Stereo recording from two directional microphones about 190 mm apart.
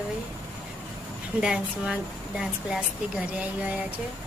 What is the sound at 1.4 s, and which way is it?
Speech, 5° right (ahead or behind).